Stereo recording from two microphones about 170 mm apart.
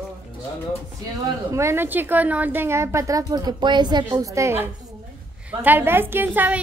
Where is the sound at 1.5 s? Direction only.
15° right (ahead or behind).